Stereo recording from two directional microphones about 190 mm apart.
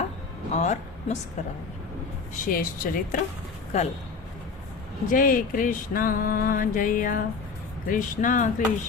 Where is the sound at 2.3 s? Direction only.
50° left (ahead or behind).